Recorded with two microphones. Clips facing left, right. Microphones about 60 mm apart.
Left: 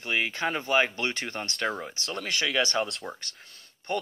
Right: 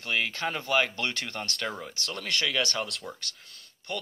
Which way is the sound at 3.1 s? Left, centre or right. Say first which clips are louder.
Left 1 dB; left.